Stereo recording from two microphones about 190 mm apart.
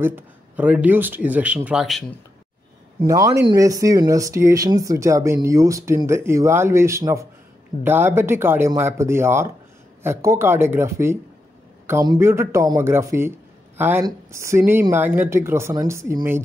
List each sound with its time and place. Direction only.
0.0 s speech: 10° right (ahead or behind)
3.0 s speech: 20° right (ahead or behind)